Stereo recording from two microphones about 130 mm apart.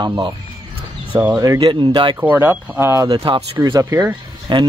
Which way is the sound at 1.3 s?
25° right (ahead or behind).